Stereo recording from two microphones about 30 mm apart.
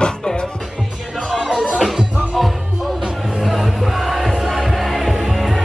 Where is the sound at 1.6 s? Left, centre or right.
Right.